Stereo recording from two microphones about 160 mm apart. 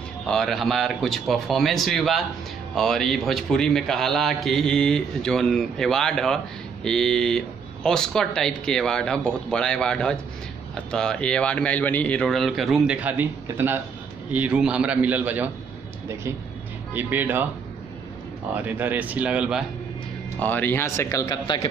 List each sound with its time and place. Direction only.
0.3 s a man's voice: centre (ahead or behind)
16.9 s a man's voice: 10° right (ahead or behind)
18.5 s a man's voice: 10° right (ahead or behind)
20.3 s speech: 10° left (ahead or behind)